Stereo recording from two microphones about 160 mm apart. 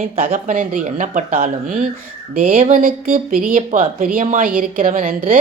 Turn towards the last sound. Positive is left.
turn(degrees=-60)  # may be behind; listen again after turning